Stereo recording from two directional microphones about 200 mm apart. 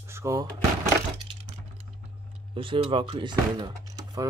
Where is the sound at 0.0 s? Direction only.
15° right (ahead or behind).